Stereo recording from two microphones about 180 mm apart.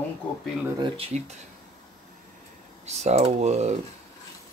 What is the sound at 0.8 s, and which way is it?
Speech, 30° right (ahead or behind).